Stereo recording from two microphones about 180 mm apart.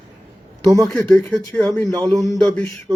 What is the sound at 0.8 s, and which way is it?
Speech, centre (ahead or behind).